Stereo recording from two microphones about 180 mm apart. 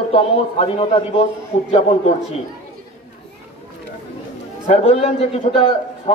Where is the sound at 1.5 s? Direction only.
40° left (ahead or behind).